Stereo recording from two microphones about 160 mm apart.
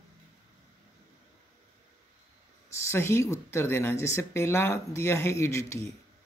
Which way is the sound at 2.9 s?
15° left (ahead or behind).